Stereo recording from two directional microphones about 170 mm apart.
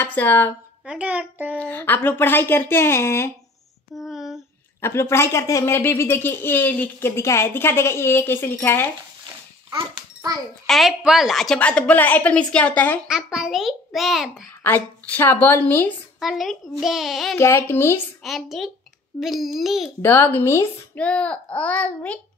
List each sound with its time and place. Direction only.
0.0 s speech: 10° left (ahead or behind)
0.8 s a child's voice: 5° right (ahead or behind)
1.6 s speech: 10° left (ahead or behind)
3.9 s a child's voice: centre (ahead or behind)
4.8 s speech: 15° left (ahead or behind)
9.7 s a sound: 20° right (ahead or behind)
10.7 s speech: centre (ahead or behind)
13.1 s a child's voice: 5° right (ahead or behind)
14.6 s speech: 10° left (ahead or behind)
16.2 s a child's voice: centre (ahead or behind)
17.4 s speech: 15° left (ahead or behind)
18.2 s a child's voice: centre (ahead or behind)
20.0 s speech: 10° left (ahead or behind)